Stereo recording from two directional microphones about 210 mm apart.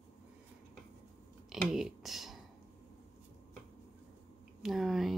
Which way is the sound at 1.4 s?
Centre (ahead or behind).